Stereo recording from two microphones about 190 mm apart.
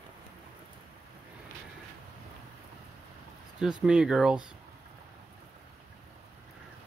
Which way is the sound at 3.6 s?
5° right (ahead or behind).